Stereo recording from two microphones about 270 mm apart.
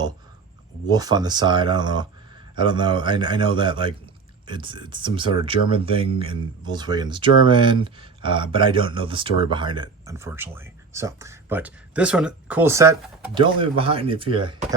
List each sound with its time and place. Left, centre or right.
0.9 s speech: centre